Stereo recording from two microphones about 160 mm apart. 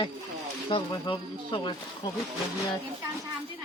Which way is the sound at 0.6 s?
35° left (ahead or behind).